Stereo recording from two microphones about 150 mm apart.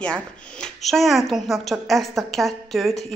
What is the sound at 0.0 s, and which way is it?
A woman's voice, 5° left (ahead or behind).